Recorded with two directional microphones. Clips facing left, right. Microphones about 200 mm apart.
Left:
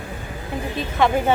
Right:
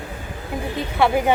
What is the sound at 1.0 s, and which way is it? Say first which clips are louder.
Speech: right 1 dB; 10° right (ahead or behind).